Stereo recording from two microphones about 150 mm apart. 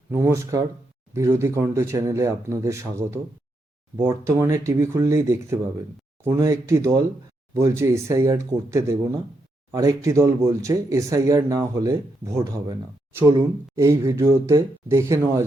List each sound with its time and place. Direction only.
0.1 s speech: 15° right (ahead or behind)